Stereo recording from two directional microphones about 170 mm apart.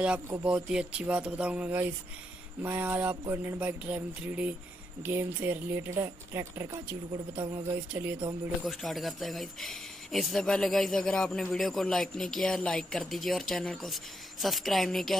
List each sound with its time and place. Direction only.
0.3 s speech: 10° right (ahead or behind)
7.3 s speech: 25° right (ahead or behind)
7.9 s speech: 10° right (ahead or behind)